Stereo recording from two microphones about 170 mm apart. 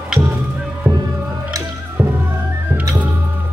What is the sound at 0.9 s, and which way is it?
Music, 15° right (ahead or behind).